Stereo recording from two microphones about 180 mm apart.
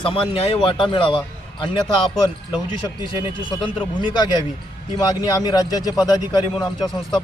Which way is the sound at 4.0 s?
25° left (ahead or behind).